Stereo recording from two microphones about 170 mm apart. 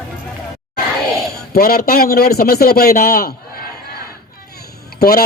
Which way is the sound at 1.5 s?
60° left (ahead or behind).